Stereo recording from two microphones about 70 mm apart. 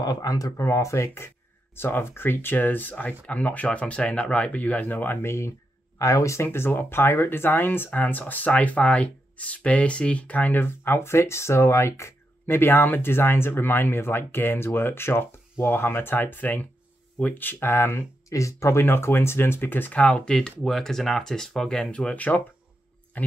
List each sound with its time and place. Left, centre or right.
0.0 s speech: left
0.6 s speech: left
5.9 s speech: left; by 21.8 s centre
21.9 s speech: centre